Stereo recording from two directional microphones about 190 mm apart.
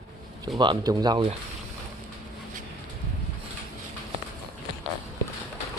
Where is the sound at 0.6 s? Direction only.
25° right (ahead or behind).